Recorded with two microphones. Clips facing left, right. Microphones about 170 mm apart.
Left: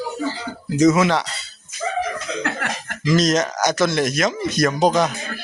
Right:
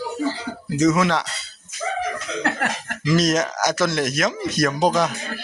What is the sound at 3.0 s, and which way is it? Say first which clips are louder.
Speech: left 1 dB; 5° right (ahead or behind).